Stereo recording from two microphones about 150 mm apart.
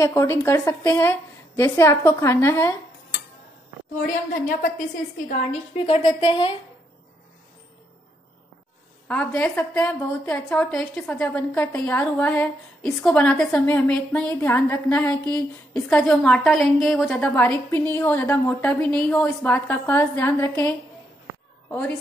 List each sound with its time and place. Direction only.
0.0 s a woman's voice: 20° left (ahead or behind)
4.3 s a woman's voice: 70° left (ahead or behind)
5.9 s speech: 35° left (ahead or behind)
9.0 s a woman's voice: 10° left (ahead or behind)